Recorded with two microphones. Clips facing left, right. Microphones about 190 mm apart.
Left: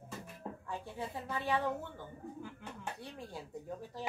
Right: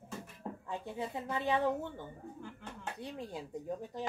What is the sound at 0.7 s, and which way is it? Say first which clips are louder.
Speech: right 3 dB; 20° right (ahead or behind).